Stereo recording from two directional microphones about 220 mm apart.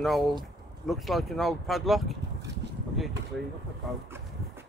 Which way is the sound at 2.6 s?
50° right (ahead or behind).